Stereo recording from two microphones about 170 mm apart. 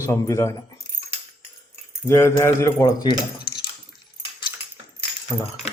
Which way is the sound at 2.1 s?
15° left (ahead or behind).